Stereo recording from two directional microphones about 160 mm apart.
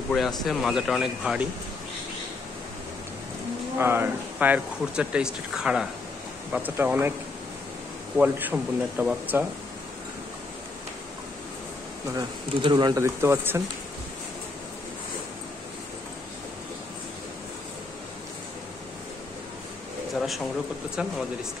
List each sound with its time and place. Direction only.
0.4 s speech: centre (ahead or behind)
3.7 s speech: 15° right (ahead or behind)
8.2 s speech: 10° right (ahead or behind)
12.2 s speech: 25° right (ahead or behind)
20.2 s speech: centre (ahead or behind)